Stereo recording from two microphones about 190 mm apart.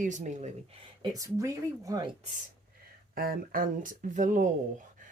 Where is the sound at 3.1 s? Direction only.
50° right (ahead or behind).